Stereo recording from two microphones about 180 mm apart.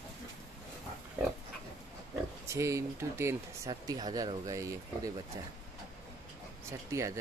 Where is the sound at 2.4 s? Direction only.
15° right (ahead or behind).